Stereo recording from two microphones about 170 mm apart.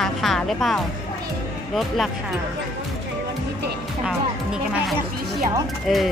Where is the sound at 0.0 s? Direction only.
Centre (ahead or behind).